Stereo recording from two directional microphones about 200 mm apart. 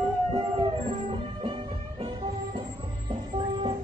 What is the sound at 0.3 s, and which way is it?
Music, 25° right (ahead or behind).